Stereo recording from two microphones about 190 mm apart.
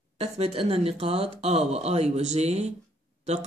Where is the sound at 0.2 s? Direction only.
30° right (ahead or behind).